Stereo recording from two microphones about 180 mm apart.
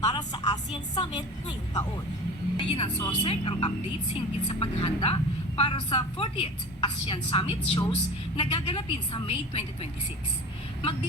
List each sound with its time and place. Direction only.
0.0 s vehicle: 25° left (ahead or behind)
1.1 s a woman's voice: 25° left (ahead or behind)